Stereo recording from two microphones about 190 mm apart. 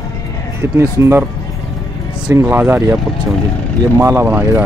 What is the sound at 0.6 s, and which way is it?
Speech, 15° right (ahead or behind).